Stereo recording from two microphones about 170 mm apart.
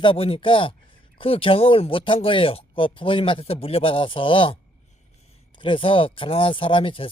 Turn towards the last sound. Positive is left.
turn(degrees=30)  # may be behind; listen again after turning